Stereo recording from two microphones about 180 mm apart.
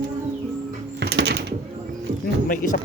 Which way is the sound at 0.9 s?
65° right (ahead or behind).